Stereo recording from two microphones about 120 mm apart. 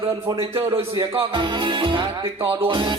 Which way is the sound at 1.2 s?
45° right (ahead or behind).